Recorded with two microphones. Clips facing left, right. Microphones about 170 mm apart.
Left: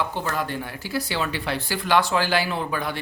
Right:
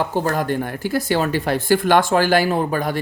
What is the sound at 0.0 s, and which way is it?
Speech, 45° right (ahead or behind).